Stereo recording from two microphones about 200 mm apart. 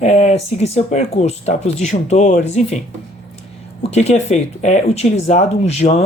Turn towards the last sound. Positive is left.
turn(degrees=35)  # may be behind; listen again after turning